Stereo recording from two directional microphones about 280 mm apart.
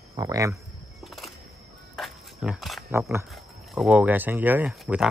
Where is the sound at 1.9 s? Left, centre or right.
Centre.